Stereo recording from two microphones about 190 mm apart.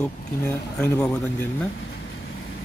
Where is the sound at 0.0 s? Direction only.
5° left (ahead or behind).